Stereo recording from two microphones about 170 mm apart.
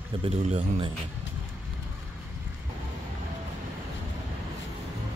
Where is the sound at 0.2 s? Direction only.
35° right (ahead or behind).